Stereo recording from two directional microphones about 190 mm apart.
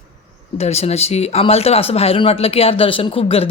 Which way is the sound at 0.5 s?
35° left (ahead or behind).